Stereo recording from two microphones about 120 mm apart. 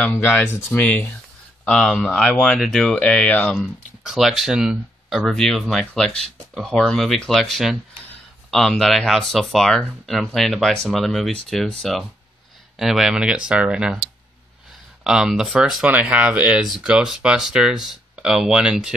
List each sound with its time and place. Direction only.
0.0 s speech: 20° left (ahead or behind)
3.5 s speech: centre (ahead or behind)
15.0 s speech: 5° right (ahead or behind)